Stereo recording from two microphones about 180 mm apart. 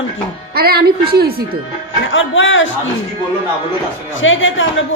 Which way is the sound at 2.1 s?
90° left.